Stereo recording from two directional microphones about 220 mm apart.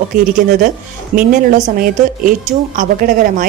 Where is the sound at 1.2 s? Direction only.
35° right (ahead or behind).